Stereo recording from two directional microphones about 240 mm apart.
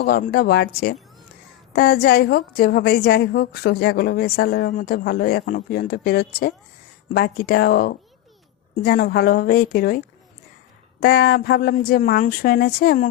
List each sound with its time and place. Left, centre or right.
0.0 s a woman's voice: left
11.0 s a woman's voice: left